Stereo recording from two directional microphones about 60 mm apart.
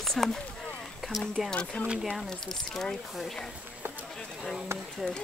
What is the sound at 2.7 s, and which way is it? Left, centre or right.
Speech, centre.